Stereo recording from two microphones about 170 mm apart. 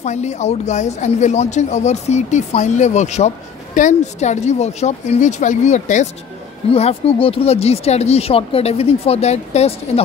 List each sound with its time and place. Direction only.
0.0 s a man's voice: 40° left (ahead or behind)